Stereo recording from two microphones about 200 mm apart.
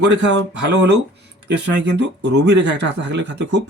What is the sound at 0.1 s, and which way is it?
Speech, 60° right (ahead or behind).